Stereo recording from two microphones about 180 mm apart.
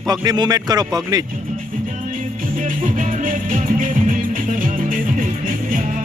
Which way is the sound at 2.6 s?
45° right (ahead or behind).